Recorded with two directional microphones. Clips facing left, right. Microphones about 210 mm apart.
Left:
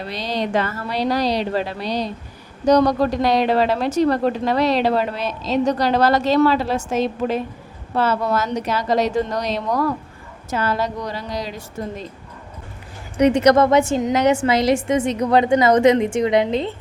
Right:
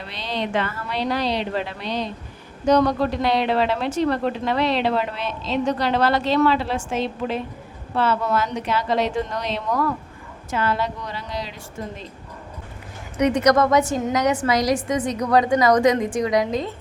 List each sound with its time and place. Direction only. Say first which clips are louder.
0.0 s a woman's voice: left 4 dB; 40° left (ahead or behind)
13.1 s a woman's voice: left 4 dB; 30° left (ahead or behind)